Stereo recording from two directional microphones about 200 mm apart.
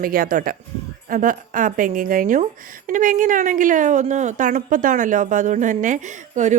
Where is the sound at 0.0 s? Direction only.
45° right (ahead or behind).